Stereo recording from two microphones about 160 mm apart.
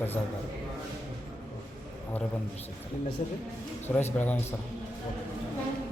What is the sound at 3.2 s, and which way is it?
Speech, 50° left (ahead or behind).